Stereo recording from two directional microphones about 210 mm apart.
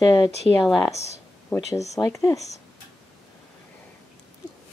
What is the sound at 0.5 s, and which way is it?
Speech, centre (ahead or behind).